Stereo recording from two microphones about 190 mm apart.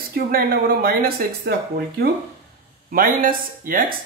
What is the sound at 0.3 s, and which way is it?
Speech, 50° right (ahead or behind).